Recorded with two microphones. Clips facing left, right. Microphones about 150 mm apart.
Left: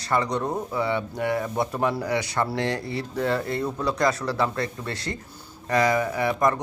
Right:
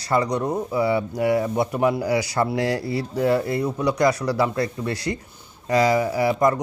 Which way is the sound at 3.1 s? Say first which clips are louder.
Right 5 dB; 25° right (ahead or behind).